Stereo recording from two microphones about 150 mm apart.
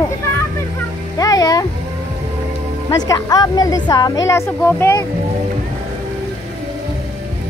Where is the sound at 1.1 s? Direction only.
25° left (ahead or behind).